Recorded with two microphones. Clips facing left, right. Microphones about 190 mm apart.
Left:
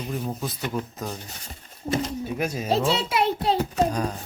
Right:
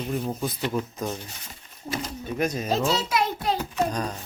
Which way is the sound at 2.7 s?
30° left (ahead or behind).